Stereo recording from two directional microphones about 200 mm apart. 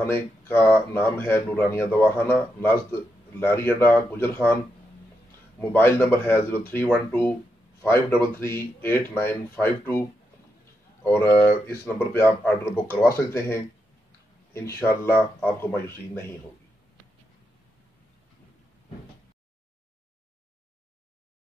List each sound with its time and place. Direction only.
0.0 s speech: 10° left (ahead or behind)
5.6 s speech: 10° left (ahead or behind)
11.1 s speech: 10° left (ahead or behind)